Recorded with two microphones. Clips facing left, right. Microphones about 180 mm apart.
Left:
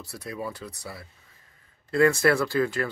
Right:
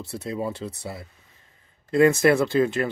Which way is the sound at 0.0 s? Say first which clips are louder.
Right 5 dB; 25° right (ahead or behind).